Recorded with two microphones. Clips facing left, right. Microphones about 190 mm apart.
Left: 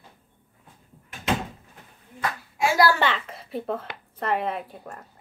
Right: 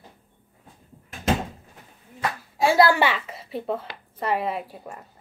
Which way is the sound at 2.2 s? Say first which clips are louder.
Right 2 dB; 30° right (ahead or behind).